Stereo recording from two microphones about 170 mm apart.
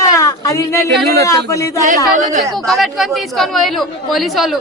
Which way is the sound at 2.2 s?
45° right (ahead or behind).